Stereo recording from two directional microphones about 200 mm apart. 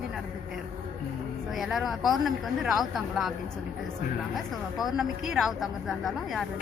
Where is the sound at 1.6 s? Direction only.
Centre (ahead or behind).